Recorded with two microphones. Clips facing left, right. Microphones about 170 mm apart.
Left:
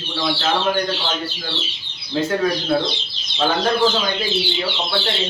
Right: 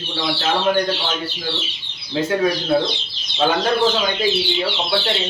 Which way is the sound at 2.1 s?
10° right (ahead or behind).